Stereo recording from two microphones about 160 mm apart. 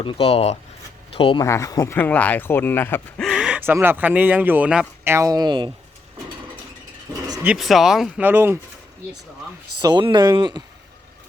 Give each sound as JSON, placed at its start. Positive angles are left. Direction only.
{"t": 0.0, "sound": "speech", "side_deg": 35}
{"t": 1.4, "sound": "speech", "side_deg": 20}
{"t": 3.2, "sound": "speech", "side_deg": 0}
{"t": 5.1, "sound": "speech", "side_deg": -20}
{"t": 7.4, "sound": "speech", "side_deg": 0}
{"t": 9.8, "sound": "speech", "side_deg": -30}